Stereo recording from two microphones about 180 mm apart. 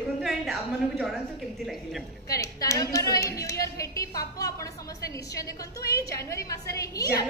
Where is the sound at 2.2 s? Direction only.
20° left (ahead or behind).